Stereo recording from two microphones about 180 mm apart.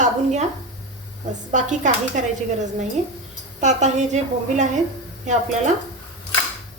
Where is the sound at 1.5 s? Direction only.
40° right (ahead or behind).